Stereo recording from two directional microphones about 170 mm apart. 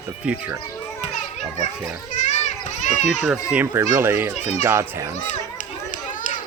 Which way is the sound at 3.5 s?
10° right (ahead or behind).